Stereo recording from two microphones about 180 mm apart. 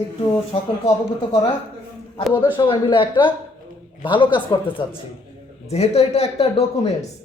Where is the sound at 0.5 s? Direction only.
30° left (ahead or behind).